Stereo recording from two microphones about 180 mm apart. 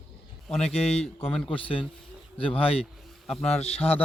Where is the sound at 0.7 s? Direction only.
35° left (ahead or behind).